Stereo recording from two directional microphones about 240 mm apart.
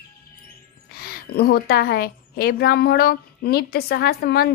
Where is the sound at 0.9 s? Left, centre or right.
Left.